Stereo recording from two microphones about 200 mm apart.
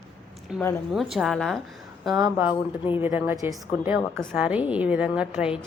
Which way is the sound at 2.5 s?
25° left (ahead or behind).